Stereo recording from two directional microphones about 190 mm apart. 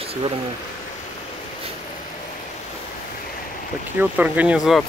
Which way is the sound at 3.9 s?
10° right (ahead or behind).